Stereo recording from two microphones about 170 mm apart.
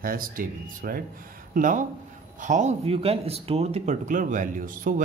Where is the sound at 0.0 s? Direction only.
60° right (ahead or behind).